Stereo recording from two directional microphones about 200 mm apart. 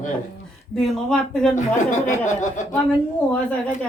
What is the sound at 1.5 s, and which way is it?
Speech, 35° left (ahead or behind).